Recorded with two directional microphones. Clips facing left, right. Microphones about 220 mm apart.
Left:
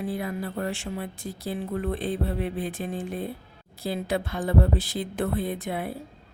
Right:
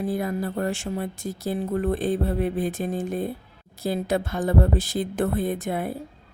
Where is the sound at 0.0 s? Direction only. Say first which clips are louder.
Right 4 dB; 40° right (ahead or behind).